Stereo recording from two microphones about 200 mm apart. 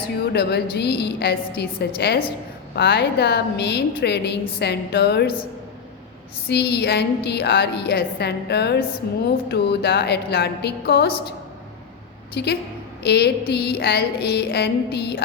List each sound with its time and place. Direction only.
0.3 s a woman's voice: 55° left (ahead or behind)
6.5 s a woman's voice: 55° left (ahead or behind)
12.3 s a woman's voice: 55° left (ahead or behind)